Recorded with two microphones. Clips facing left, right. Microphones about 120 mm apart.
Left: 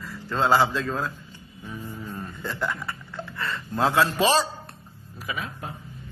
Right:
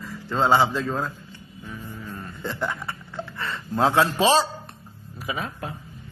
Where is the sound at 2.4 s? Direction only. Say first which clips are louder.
Right 1 dB; 20° right (ahead or behind).